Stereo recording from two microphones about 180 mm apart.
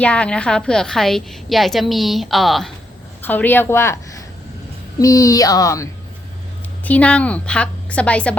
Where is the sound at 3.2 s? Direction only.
10° left (ahead or behind).